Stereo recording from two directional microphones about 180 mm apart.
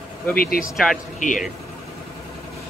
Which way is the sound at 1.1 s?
45° left (ahead or behind).